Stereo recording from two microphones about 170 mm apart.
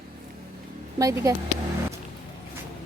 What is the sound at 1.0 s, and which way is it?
Speech, 20° right (ahead or behind).